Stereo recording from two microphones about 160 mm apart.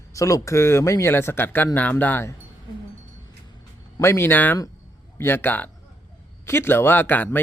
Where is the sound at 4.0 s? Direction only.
15° left (ahead or behind).